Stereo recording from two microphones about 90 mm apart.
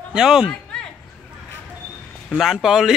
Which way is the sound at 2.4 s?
5° right (ahead or behind).